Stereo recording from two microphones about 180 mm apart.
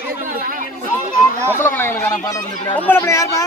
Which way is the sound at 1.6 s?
10° left (ahead or behind).